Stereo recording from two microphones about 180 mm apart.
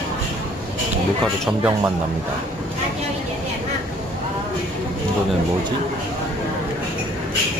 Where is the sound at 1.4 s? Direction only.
10° right (ahead or behind).